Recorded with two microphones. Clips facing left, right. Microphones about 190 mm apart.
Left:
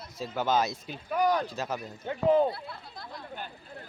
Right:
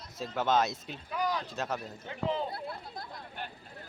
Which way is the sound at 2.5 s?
50° right (ahead or behind).